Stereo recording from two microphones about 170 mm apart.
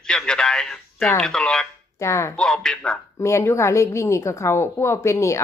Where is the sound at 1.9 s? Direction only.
15° left (ahead or behind).